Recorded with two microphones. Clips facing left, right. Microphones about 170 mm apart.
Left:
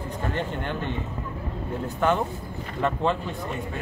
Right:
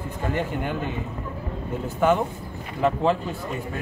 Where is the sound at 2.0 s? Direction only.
5° right (ahead or behind).